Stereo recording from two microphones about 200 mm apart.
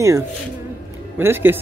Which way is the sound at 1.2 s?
10° right (ahead or behind).